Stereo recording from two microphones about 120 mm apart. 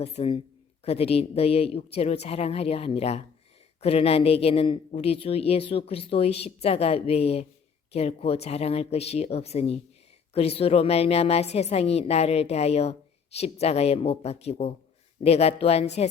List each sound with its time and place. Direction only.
0.0 s a woman's voice: 60° left (ahead or behind)